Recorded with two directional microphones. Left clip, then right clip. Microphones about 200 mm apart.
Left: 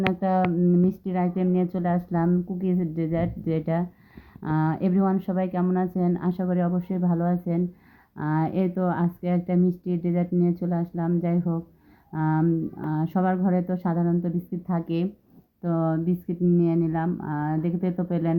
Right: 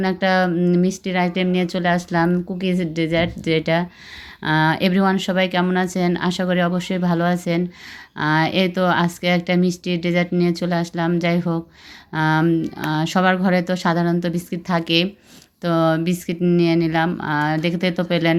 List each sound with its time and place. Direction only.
0.1 s speech: 10° right (ahead or behind)